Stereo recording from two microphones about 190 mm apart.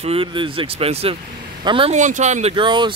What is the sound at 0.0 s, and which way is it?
Speech, 30° right (ahead or behind).